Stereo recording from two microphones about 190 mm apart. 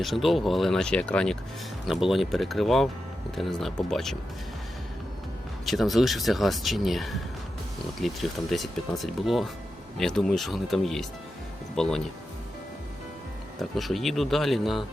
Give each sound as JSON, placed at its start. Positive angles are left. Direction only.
{"t": 0.0, "sound": "speech", "side_deg": 0}
{"t": 5.6, "sound": "speech", "side_deg": 0}
{"t": 13.6, "sound": "speech", "side_deg": 0}